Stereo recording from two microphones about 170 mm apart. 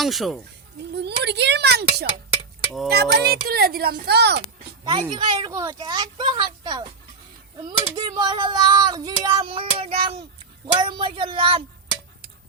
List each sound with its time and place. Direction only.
0.0 s speech: centre (ahead or behind)
0.9 s a woman's voice: 85° right
4.9 s speech: 30° right (ahead or behind)
5.5 s a sound: 20° right (ahead or behind)
10.8 s speech: 30° right (ahead or behind)